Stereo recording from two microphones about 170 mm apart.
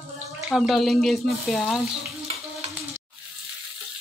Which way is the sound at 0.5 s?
Centre (ahead or behind).